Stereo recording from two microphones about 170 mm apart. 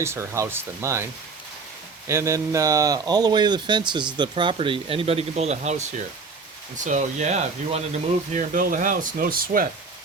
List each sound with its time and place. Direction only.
0.0 s speech: 15° right (ahead or behind)
2.0 s speech: 15° right (ahead or behind); by 9.6 s 55° right (ahead or behind)